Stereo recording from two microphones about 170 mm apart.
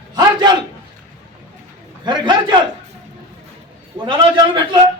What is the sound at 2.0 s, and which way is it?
Speech, 30° right (ahead or behind).